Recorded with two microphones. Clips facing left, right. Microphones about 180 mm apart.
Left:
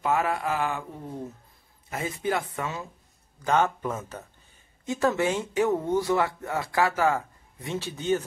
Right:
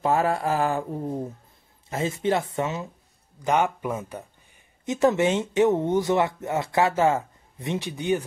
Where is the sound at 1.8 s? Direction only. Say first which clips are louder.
Right 4 dB; 25° right (ahead or behind).